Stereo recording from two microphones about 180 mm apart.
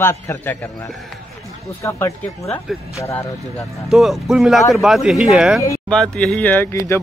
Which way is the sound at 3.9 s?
Centre (ahead or behind).